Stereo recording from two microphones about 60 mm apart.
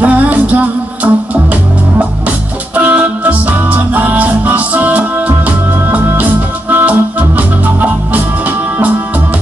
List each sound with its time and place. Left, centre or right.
0.0 s music: right